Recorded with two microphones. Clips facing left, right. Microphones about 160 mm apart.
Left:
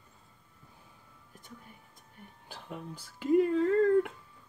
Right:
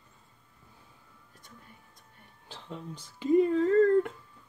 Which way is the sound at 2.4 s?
10° left (ahead or behind).